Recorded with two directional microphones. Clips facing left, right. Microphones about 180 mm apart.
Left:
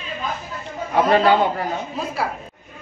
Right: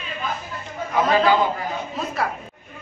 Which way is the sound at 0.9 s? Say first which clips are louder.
Left 2 dB; 65° left (ahead or behind).